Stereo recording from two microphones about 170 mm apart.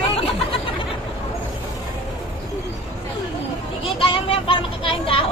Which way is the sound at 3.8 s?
35° left (ahead or behind).